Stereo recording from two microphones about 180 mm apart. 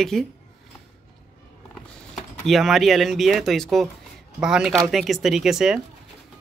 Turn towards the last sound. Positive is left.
turn(degrees=-5)  # may be behind; listen again after turning